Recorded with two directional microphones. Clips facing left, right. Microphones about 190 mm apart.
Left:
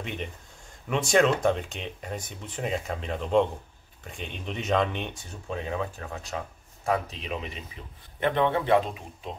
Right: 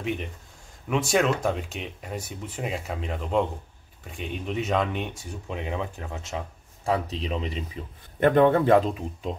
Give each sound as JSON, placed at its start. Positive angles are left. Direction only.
{"t": 0.8, "sound": "speech", "side_deg": -5}
{"t": 5.5, "sound": "speech", "side_deg": -20}
{"t": 8.2, "sound": "a man's voice", "side_deg": -45}